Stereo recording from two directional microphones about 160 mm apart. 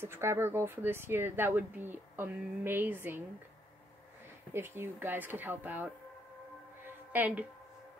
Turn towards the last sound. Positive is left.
turn(degrees=-10)  # may be behind; listen again after turning